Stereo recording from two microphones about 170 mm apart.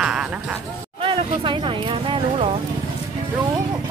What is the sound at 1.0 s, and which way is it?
Speech, 30° right (ahead or behind).